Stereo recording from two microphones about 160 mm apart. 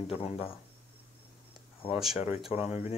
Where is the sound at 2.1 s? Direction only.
40° left (ahead or behind).